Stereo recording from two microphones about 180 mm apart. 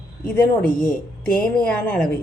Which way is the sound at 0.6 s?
50° left (ahead or behind).